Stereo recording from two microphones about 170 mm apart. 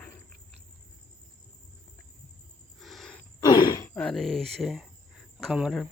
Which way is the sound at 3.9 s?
5° left (ahead or behind).